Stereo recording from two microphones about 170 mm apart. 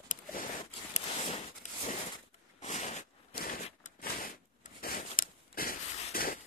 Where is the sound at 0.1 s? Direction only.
55° left (ahead or behind).